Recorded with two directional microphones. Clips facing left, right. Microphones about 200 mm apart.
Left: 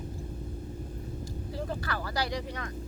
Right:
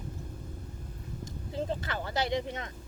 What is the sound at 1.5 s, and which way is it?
Vehicle, 20° right (ahead or behind).